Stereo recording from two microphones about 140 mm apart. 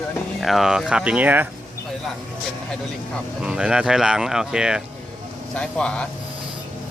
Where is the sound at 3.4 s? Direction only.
5° right (ahead or behind).